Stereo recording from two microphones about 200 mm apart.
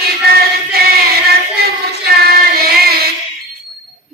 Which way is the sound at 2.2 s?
50° right (ahead or behind).